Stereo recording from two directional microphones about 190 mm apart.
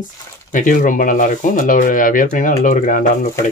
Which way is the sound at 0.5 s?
45° left (ahead or behind).